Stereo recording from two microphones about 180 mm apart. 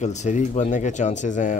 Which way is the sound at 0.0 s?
40° left (ahead or behind).